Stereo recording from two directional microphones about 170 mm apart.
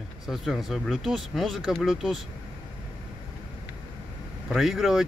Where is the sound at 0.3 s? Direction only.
Centre (ahead or behind).